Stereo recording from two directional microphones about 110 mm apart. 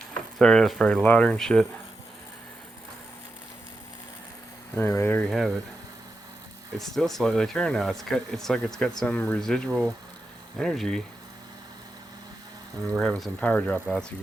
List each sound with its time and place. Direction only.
0.1 s speech: 5° left (ahead or behind)
4.7 s speech: 20° left (ahead or behind)
5.2 s speech: centre (ahead or behind)
6.7 s speech: centre (ahead or behind)
13.0 s speech: centre (ahead or behind)
13.4 s speech: 15° left (ahead or behind)